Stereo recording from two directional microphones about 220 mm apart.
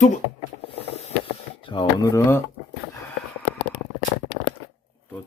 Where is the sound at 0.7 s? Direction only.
30° left (ahead or behind).